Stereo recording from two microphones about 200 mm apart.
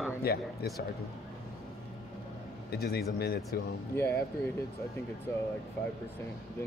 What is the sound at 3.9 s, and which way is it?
Speech, 15° left (ahead or behind).